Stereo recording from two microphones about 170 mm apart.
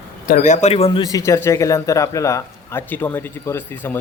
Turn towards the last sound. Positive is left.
turn(degrees=10)  # may be behind; listen again after turning